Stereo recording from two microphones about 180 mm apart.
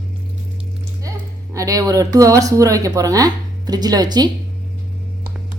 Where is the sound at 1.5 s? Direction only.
20° right (ahead or behind).